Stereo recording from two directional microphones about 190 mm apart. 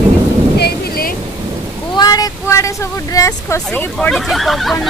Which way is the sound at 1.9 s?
20° left (ahead or behind).